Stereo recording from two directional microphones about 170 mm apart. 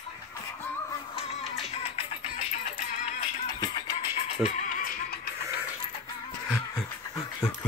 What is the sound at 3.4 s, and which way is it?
Music, 25° left (ahead or behind).